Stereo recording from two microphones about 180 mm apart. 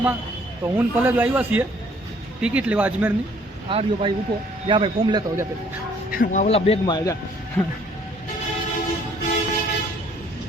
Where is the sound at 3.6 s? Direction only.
30° right (ahead or behind).